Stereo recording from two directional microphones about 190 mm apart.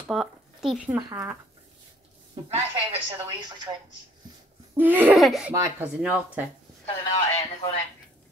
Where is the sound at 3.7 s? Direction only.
20° right (ahead or behind).